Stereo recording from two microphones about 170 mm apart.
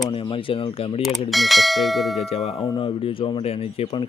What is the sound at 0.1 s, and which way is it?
Speech, 30° left (ahead or behind).